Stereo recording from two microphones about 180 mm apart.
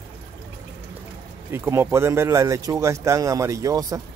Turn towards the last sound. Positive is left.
turn(degrees=-20)  # may be behind; listen again after turning